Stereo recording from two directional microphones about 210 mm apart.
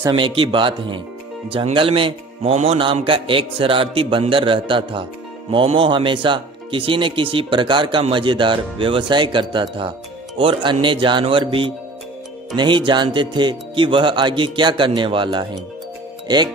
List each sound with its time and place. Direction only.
0.0 s speech: 25° right (ahead or behind)